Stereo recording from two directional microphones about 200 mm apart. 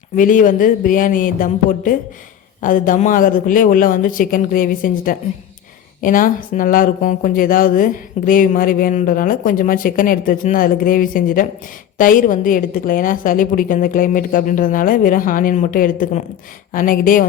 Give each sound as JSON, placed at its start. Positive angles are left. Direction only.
{"t": 0.2, "sound": "speech", "side_deg": 40}